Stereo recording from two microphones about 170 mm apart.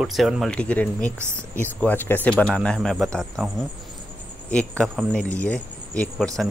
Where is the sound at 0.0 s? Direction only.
Centre (ahead or behind).